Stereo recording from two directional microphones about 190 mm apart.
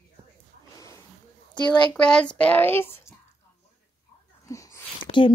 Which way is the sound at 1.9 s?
5° left (ahead or behind).